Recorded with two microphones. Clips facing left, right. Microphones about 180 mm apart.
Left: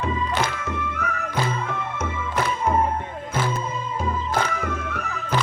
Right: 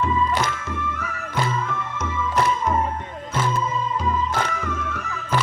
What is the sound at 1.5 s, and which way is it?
Music, 50° left (ahead or behind).